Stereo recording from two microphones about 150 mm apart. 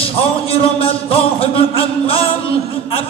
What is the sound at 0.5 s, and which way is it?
Music, 40° left (ahead or behind).